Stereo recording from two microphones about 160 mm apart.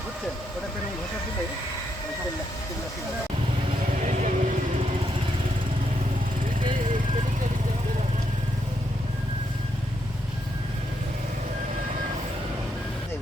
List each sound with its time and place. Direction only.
3.9 s vehicle: 50° right (ahead or behind)